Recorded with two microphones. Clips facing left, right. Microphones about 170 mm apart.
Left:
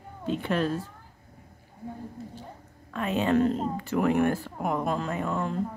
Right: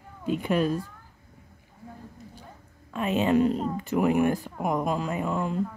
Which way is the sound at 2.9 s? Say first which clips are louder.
Right 1 dB; 20° right (ahead or behind).